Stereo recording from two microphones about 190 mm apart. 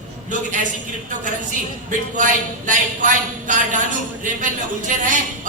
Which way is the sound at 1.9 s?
40° right (ahead or behind).